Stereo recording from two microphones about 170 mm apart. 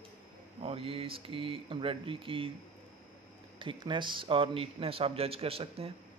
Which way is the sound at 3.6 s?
30° right (ahead or behind).